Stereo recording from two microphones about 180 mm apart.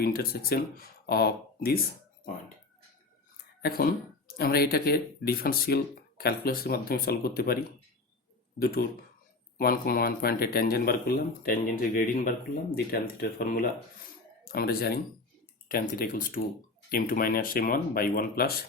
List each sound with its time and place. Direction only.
0.0 s speech: 55° left (ahead or behind)
3.6 s speech: 55° left (ahead or behind)